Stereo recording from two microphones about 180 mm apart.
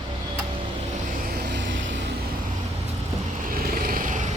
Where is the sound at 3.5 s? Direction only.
55° right (ahead or behind).